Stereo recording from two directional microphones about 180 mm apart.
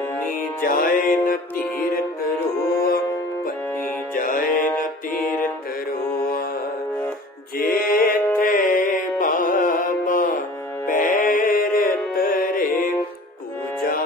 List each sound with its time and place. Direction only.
0.2 s music: 50° left (ahead or behind)
4.1 s music: 50° left (ahead or behind)
4.6 s music: 10° left (ahead or behind)
7.5 s music: 55° left (ahead or behind)